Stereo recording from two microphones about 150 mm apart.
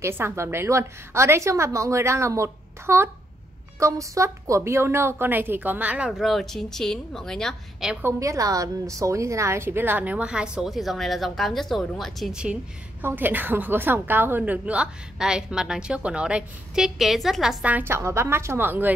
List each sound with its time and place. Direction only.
0.0 s a woman's voice: 15° right (ahead or behind); by 8.0 s centre (ahead or behind)
8.0 s a woman's voice: 20° right (ahead or behind)